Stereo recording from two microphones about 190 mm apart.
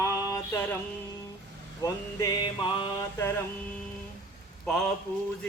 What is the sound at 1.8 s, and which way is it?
Mantra, 20° left (ahead or behind).